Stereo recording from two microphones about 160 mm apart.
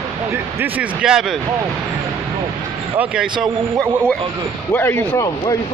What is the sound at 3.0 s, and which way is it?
Speech, 5° right (ahead or behind).